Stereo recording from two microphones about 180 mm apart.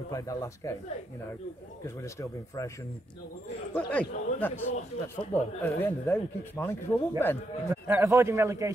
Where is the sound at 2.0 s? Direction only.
20° left (ahead or behind).